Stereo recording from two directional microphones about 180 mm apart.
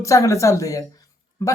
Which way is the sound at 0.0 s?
15° left (ahead or behind).